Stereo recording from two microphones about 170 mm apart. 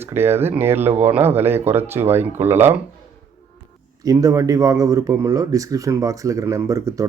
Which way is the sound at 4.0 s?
20° right (ahead or behind).